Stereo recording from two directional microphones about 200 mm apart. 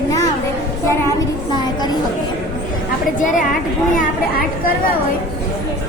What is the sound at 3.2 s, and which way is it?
Speech, 40° left (ahead or behind).